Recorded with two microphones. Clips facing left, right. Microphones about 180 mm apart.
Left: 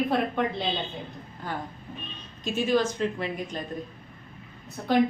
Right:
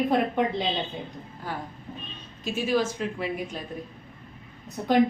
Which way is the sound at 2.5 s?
5° right (ahead or behind).